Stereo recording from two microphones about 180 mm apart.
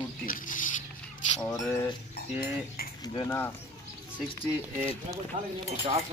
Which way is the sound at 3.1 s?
15° left (ahead or behind).